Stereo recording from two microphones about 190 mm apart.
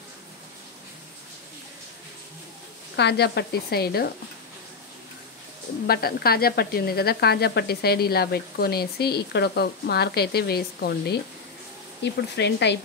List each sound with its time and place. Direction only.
3.0 s speech: 60° left (ahead or behind)
5.9 s speech: 55° left (ahead or behind)